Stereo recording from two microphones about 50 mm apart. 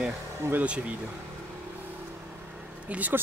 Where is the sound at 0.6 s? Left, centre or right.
Right.